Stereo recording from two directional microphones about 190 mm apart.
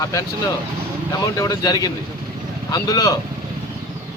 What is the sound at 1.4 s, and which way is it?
Speech, 20° left (ahead or behind).